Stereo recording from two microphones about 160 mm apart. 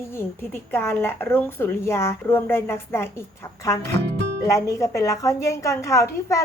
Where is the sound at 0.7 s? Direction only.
15° left (ahead or behind).